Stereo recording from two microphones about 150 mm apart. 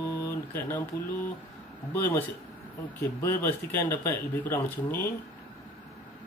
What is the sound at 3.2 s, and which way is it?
Speech, 15° left (ahead or behind).